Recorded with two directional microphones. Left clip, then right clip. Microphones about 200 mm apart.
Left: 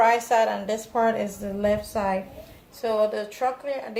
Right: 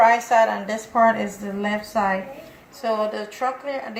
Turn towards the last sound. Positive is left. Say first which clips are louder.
# right 1 dB
turn(degrees=50)  # may be behind; listen again after turning